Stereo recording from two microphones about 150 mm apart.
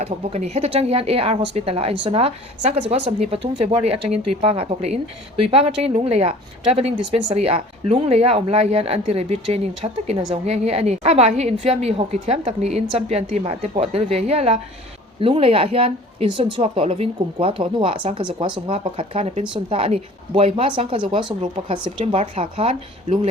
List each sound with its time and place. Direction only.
0.0 s a woman's voice: 45° right (ahead or behind)